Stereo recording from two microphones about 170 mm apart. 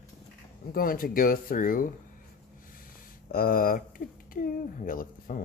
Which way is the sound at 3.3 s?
60° left (ahead or behind).